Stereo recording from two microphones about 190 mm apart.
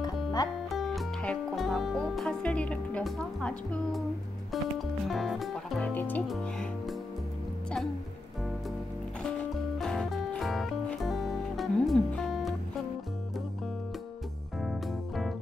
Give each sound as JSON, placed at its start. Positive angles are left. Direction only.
{"t": 0.0, "sound": "music", "side_deg": 20}
{"t": 0.7, "sound": "music", "side_deg": 0}
{"t": 9.2, "sound": "music", "side_deg": 0}
{"t": 14.6, "sound": "music", "side_deg": 0}